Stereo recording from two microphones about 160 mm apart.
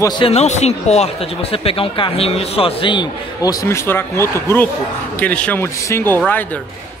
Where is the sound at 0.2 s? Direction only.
40° left (ahead or behind).